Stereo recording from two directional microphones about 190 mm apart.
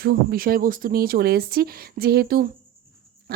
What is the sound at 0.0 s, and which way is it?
A woman's voice, 55° right (ahead or behind).